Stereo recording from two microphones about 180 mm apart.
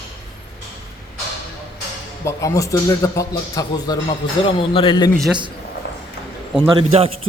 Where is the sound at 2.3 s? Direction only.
20° left (ahead or behind).